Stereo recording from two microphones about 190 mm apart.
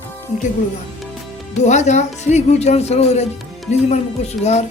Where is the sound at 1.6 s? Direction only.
40° left (ahead or behind).